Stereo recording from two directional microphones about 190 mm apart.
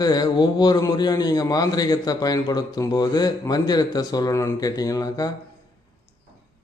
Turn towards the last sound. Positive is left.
turn(degrees=20)  # may be behind; listen again after turning